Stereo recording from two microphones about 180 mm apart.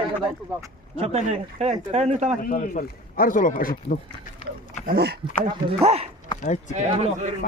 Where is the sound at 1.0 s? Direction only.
35° right (ahead or behind).